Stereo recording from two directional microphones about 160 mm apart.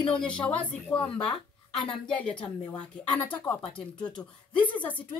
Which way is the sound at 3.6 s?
35° left (ahead or behind).